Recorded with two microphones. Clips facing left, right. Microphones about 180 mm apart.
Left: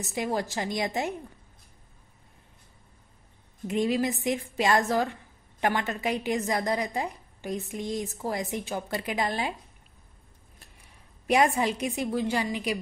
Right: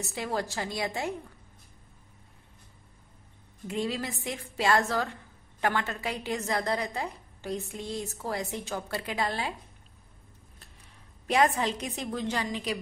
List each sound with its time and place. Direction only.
0.0 s a woman's voice: 15° left (ahead or behind)
3.6 s a woman's voice: 15° left (ahead or behind)
11.2 s a woman's voice: 15° left (ahead or behind)